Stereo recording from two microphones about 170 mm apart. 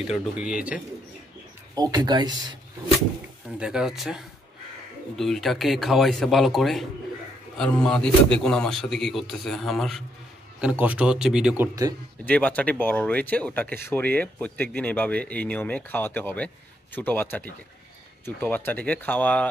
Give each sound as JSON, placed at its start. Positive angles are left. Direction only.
{"t": 0.0, "sound": "a man's voice", "side_deg": -5}
{"t": 1.8, "sound": "speech", "side_deg": -25}
{"t": 3.5, "sound": "a man's voice", "side_deg": -5}
{"t": 12.3, "sound": "speech", "side_deg": 10}